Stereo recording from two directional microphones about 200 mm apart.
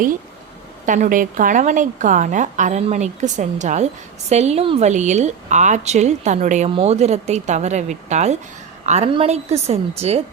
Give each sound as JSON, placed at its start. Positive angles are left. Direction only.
{"t": 0.9, "sound": "a woman's voice", "side_deg": -40}